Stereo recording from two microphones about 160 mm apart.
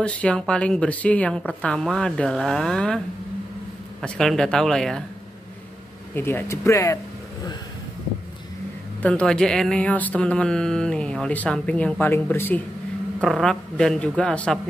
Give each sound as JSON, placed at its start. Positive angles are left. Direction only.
{"t": 0.0, "sound": "speech", "side_deg": 5}
{"t": 4.0, "sound": "speech", "side_deg": 5}
{"t": 6.1, "sound": "speech", "side_deg": 15}
{"t": 9.0, "sound": "speech", "side_deg": 5}
{"t": 13.2, "sound": "speech", "side_deg": 0}